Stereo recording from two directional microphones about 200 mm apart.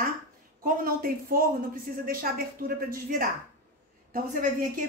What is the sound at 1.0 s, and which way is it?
A woman's voice, 45° right (ahead or behind).